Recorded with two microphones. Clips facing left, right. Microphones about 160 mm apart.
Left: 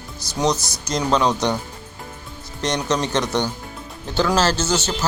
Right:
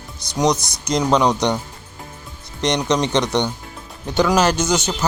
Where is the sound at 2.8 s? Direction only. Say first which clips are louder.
Right 2 dB; 15° right (ahead or behind).